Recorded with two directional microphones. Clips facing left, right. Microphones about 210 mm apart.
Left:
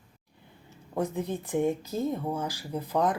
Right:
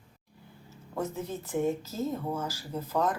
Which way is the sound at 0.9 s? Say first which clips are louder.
Left 4 dB; 15° left (ahead or behind).